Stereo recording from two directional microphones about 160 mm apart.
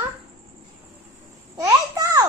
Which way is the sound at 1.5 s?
20° right (ahead or behind).